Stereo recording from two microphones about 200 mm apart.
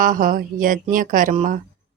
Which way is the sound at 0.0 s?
45° right (ahead or behind).